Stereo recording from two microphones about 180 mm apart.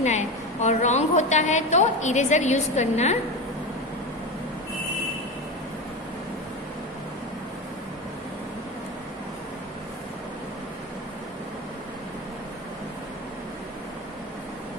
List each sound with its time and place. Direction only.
0.0 s a woman's voice: 40° left (ahead or behind)